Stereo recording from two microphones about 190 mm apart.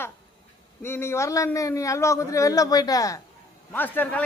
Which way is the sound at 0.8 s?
10° left (ahead or behind).